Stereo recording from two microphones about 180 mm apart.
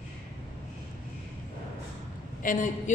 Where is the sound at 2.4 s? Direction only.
45° left (ahead or behind).